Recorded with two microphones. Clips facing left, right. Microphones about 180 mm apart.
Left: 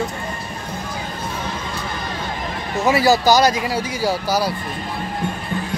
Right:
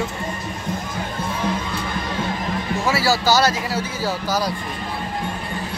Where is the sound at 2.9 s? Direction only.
20° left (ahead or behind).